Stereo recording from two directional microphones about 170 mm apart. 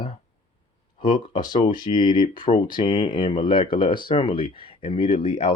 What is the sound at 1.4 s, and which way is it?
Speech, 50° left (ahead or behind).